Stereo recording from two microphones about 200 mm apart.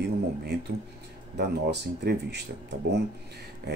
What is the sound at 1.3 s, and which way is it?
Speech, 55° right (ahead or behind).